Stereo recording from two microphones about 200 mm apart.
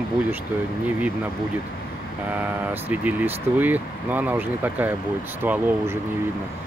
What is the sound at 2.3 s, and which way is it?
Speech, 10° right (ahead or behind).